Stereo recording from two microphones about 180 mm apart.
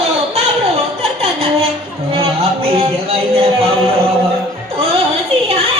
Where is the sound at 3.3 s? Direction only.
35° right (ahead or behind).